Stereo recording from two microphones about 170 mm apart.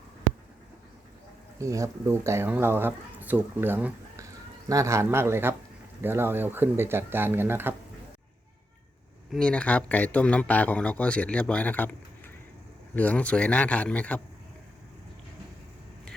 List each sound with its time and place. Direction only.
1.5 s speech: 20° right (ahead or behind)
9.3 s speech: 5° left (ahead or behind)